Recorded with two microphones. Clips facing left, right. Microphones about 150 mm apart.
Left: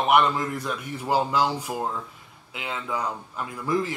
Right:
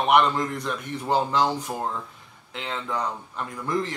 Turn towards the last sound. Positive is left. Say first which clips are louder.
# left 1 dB
turn(degrees=5)  # may be behind; listen again after turning